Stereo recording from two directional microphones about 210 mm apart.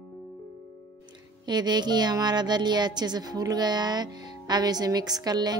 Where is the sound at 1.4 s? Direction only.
20° right (ahead or behind).